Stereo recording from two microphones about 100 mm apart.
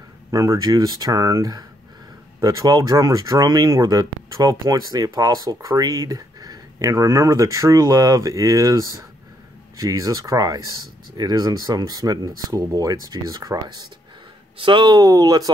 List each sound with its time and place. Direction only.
0.3 s speech: 35° right (ahead or behind)
14.6 s speech: 55° right (ahead or behind)